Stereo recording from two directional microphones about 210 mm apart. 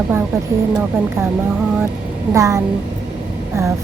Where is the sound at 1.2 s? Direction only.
10° right (ahead or behind).